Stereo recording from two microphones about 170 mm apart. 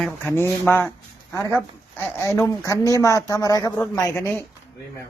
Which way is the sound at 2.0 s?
20° left (ahead or behind).